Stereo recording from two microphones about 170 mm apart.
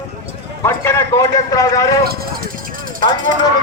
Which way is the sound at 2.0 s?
60° right (ahead or behind).